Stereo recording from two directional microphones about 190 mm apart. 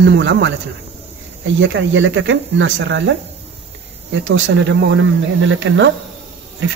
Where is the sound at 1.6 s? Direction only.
80° right.